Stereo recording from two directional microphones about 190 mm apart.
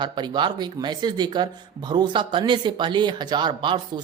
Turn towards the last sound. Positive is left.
turn(degrees=-25)  # may be behind; listen again after turning